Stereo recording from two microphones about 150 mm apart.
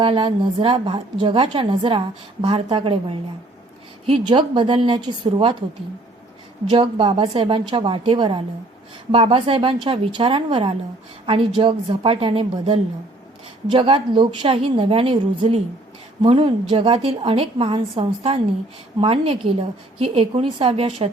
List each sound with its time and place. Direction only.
0.0 s a woman's voice: 35° right (ahead or behind)
4.2 s a woman's voice: 30° right (ahead or behind)
6.7 s a woman's voice: 35° right (ahead or behind)